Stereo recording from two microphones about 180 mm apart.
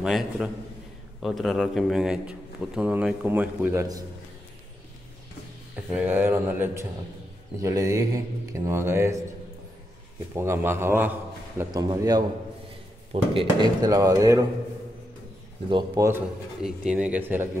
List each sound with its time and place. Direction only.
0.0 s a man's voice: centre (ahead or behind)
5.9 s a man's voice: 10° right (ahead or behind)
10.3 s a man's voice: 15° right (ahead or behind)
11.7 s speech: 20° right (ahead or behind)
15.7 s speech: 25° right (ahead or behind)
16.6 s a man's voice: 5° right (ahead or behind)